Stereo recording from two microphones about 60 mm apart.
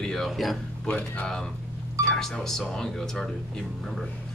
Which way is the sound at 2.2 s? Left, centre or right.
Centre.